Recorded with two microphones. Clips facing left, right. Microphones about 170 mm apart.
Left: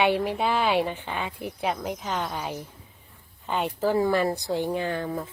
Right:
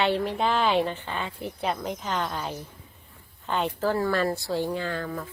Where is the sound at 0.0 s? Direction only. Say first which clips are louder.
Left 1 dB; 10° left (ahead or behind).